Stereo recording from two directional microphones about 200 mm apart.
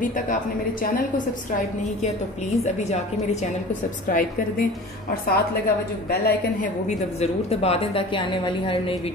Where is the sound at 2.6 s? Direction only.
35° left (ahead or behind); by 6.7 s 50° left (ahead or behind).